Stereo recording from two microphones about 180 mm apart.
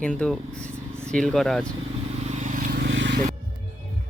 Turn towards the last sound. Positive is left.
turn(degrees=-90)